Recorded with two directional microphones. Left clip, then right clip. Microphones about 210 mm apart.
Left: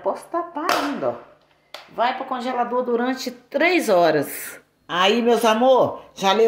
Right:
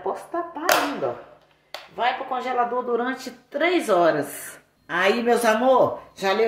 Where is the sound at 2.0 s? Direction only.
30° left (ahead or behind).